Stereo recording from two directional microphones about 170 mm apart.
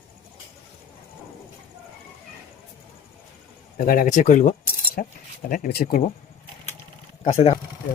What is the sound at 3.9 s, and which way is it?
Speech, 50° left (ahead or behind).